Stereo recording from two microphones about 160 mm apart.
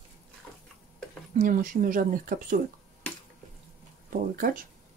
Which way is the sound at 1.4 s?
60° right (ahead or behind).